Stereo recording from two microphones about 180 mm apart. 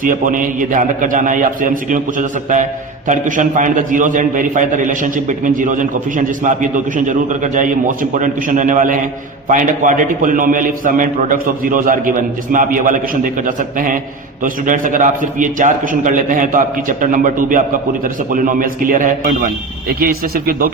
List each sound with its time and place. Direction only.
0.0 s a man's voice: 50° right (ahead or behind)